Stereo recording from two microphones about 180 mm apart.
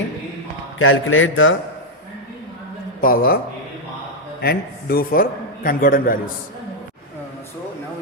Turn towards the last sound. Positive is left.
turn(degrees=50)  # may be behind; listen again after turning